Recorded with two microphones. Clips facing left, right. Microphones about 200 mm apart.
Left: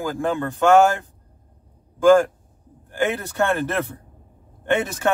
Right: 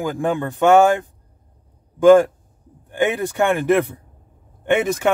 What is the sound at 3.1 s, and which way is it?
Speech, 15° right (ahead or behind).